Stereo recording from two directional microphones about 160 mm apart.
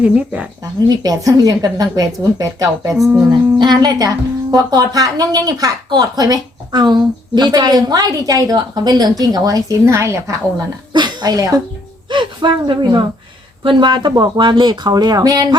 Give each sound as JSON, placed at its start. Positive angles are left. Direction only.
{"t": 0.0, "sound": "speech", "side_deg": -10}
{"t": 0.9, "sound": "a woman's voice", "side_deg": -25}
{"t": 3.0, "sound": "speech", "side_deg": -10}
{"t": 3.6, "sound": "a woman's voice", "side_deg": -25}